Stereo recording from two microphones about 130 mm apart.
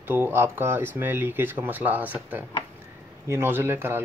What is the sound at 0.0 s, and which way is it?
Speech, 15° right (ahead or behind).